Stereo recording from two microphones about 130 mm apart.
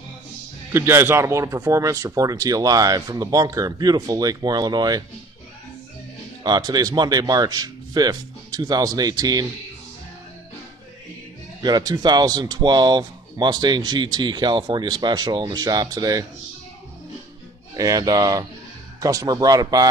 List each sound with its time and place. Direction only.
0.7 s speech: 20° right (ahead or behind)
6.4 s speech: 30° right (ahead or behind)
11.6 s speech: 30° right (ahead or behind)
17.7 s speech: 30° right (ahead or behind)